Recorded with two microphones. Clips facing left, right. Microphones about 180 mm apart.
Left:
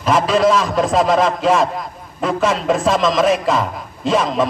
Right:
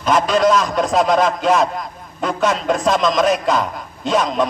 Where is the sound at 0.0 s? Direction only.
Centre (ahead or behind).